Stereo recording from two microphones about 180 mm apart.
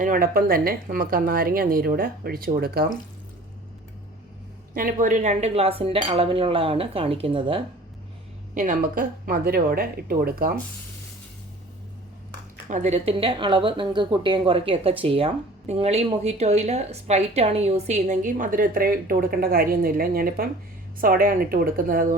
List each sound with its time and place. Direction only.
0.0 s a woman's voice: 50° right (ahead or behind)
4.7 s a woman's voice: 55° right (ahead or behind); by 7.6 s 30° right (ahead or behind)
8.5 s speech: 45° right (ahead or behind)
12.6 s a woman's voice: 40° right (ahead or behind)